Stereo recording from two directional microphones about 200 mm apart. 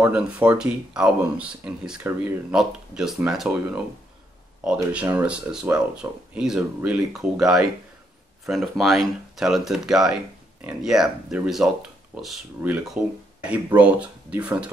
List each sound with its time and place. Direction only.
0.0 s speech: 5° right (ahead or behind)